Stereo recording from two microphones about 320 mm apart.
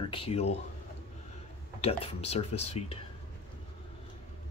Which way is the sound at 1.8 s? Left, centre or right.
Centre.